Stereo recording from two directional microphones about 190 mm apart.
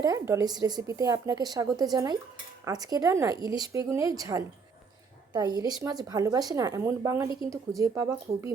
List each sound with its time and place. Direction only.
0.0 s a woman's voice: 15° right (ahead or behind)